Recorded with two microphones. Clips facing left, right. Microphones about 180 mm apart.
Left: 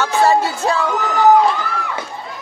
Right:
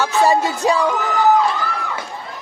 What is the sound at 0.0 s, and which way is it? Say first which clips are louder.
Music: left 1 dB; 15° right (ahead or behind).